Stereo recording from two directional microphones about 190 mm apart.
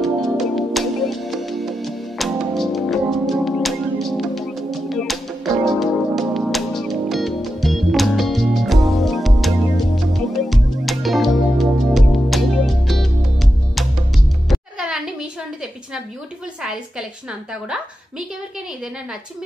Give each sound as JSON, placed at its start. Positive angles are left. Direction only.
{"t": 0.0, "sound": "music", "side_deg": 0}